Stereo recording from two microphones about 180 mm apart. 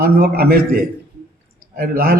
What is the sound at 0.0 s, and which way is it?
A man's voice, 60° right (ahead or behind).